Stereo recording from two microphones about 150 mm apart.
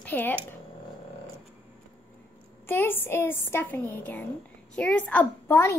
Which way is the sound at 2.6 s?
15° left (ahead or behind).